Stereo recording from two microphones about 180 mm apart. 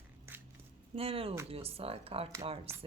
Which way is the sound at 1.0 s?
30° right (ahead or behind).